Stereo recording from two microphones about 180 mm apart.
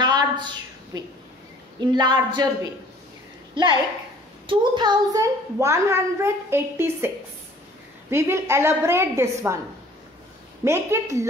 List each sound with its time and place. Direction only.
0.0 s a sound: 25° right (ahead or behind)
1.8 s a woman's voice: 25° right (ahead or behind)
4.5 s a woman's voice: 25° right (ahead or behind)
8.1 s a woman's voice: 15° right (ahead or behind)
10.6 s a woman's voice: 15° right (ahead or behind)